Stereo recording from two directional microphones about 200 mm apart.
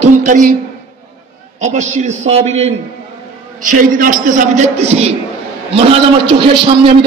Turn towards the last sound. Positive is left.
turn(degrees=-25)  # may be behind; listen again after turning